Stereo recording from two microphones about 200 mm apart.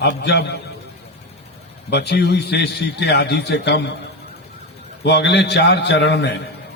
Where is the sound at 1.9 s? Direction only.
55° left (ahead or behind).